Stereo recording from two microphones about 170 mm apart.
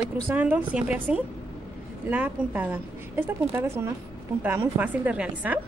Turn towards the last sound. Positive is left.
turn(degrees=-10)  # may be behind; listen again after turning